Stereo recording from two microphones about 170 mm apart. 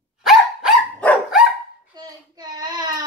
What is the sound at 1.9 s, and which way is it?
Child singing, 25° right (ahead or behind).